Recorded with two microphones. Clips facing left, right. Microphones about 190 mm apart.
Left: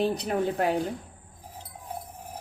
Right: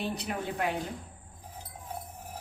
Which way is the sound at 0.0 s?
35° left (ahead or behind).